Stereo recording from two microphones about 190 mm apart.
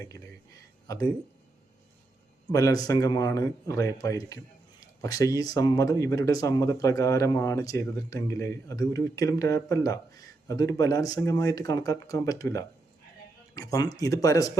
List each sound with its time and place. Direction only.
2.5 s speech: 20° left (ahead or behind)